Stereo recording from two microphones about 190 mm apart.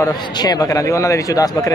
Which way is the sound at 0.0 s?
20° left (ahead or behind).